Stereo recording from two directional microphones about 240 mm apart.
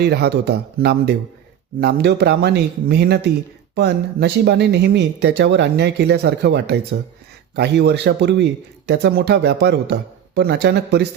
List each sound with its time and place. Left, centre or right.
0.0 s speech: right